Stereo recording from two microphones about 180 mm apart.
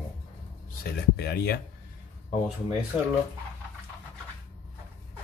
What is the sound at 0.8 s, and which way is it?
Speech, 60° left (ahead or behind).